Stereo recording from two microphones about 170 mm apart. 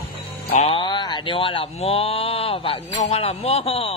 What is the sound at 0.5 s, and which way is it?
Speech, 35° left (ahead or behind).